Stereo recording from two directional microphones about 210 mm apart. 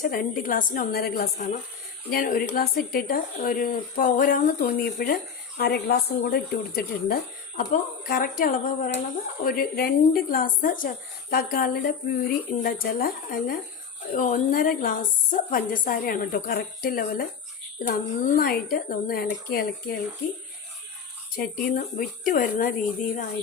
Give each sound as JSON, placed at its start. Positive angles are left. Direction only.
{"t": 0.0, "sound": "a woman's voice", "side_deg": 40}
{"t": 21.3, "sound": "speech", "side_deg": 40}